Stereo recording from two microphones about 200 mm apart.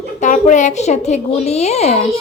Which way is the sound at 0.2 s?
40° left (ahead or behind).